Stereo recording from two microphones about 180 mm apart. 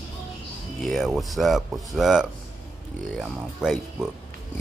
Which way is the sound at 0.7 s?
Centre (ahead or behind).